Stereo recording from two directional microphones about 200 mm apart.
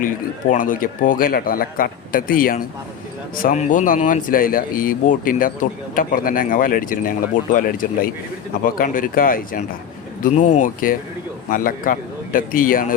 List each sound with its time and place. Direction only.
0.5 s speech: 45° left (ahead or behind)